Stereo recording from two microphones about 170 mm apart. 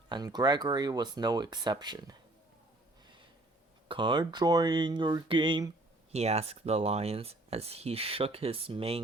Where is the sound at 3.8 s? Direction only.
30° right (ahead or behind).